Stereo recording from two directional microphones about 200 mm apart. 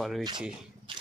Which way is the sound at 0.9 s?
25° right (ahead or behind).